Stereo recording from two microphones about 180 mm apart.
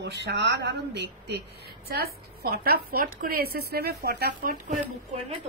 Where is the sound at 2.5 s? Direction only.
55° right (ahead or behind).